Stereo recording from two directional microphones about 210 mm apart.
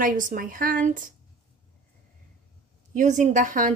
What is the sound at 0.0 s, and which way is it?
A woman's voice, 40° right (ahead or behind).